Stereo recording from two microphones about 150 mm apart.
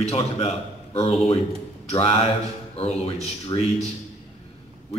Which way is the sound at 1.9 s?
40° left (ahead or behind).